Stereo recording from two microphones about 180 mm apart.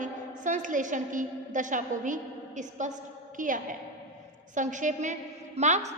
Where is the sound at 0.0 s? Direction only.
45° right (ahead or behind).